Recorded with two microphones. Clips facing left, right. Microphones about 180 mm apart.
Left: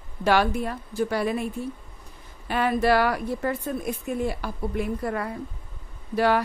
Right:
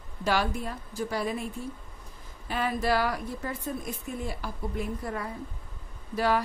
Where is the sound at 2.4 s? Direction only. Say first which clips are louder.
Left 6 dB; 70° left (ahead or behind).